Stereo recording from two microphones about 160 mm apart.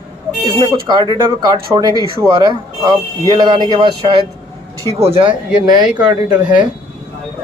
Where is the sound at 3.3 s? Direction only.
30° right (ahead or behind).